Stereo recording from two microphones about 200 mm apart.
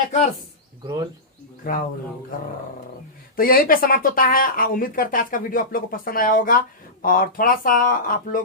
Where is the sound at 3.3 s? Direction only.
45° left (ahead or behind).